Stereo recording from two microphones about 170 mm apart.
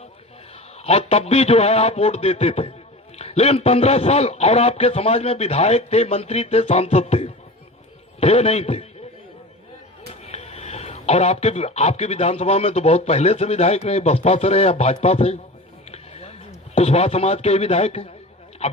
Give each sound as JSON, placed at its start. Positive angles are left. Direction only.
{"t": 0.8, "sound": "speech", "side_deg": 35}
{"t": 10.2, "sound": "speech", "side_deg": 40}
{"t": 15.9, "sound": "music", "side_deg": 40}
{"t": 16.7, "sound": "speech", "side_deg": 40}